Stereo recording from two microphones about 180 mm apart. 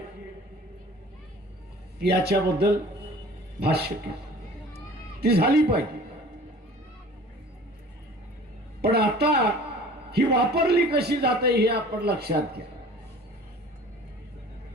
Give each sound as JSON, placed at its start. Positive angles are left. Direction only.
{"t": 2.0, "sound": "a man's voice", "side_deg": -60}
{"t": 5.2, "sound": "a man's voice", "side_deg": -60}
{"t": 8.8, "sound": "a man's voice", "side_deg": -65}